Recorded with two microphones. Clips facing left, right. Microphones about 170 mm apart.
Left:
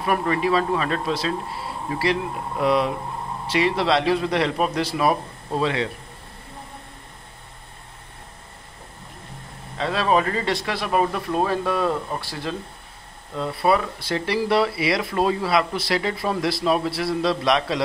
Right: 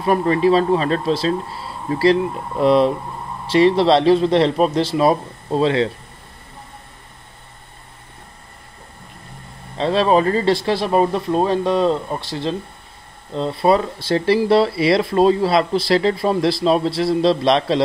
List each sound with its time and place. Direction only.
0.0 s speech: 30° right (ahead or behind)
9.8 s speech: 30° right (ahead or behind)